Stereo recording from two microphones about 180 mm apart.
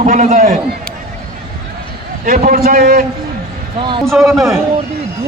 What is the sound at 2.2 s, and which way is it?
Speech, 50° right (ahead or behind).